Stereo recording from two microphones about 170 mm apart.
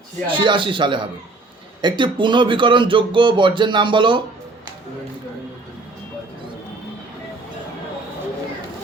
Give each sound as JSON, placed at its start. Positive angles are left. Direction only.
{"t": 0.3, "sound": "speech", "side_deg": -30}